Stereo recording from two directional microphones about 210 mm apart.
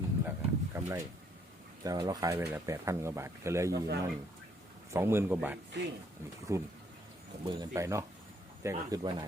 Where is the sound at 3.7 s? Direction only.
50° right (ahead or behind).